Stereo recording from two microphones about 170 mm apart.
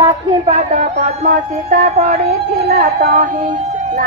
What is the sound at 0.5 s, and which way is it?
Emergency vehicle, 45° right (ahead or behind).